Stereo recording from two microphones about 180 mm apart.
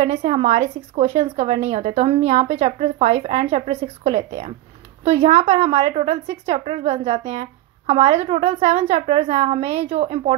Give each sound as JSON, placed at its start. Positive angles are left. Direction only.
{"t": 0.0, "sound": "a woman's voice", "side_deg": -35}